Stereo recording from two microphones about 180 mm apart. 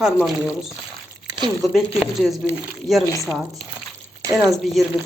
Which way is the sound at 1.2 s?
20° right (ahead or behind).